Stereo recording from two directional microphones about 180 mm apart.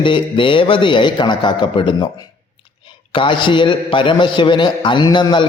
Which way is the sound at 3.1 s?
30° left (ahead or behind).